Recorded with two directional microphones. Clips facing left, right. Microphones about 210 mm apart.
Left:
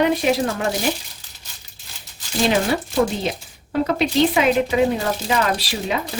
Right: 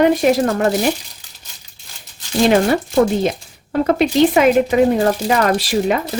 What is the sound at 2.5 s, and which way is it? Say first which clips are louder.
Speech: right 5 dB; 55° right (ahead or behind).